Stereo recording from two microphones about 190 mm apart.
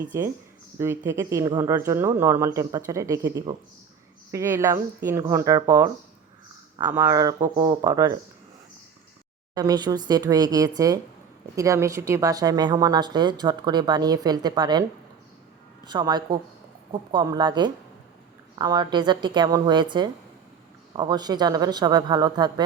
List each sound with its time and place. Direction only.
0.1 s speech: 15° right (ahead or behind)
4.3 s speech: 15° right (ahead or behind)
9.6 s speech: 20° right (ahead or behind)
15.9 s speech: 20° right (ahead or behind)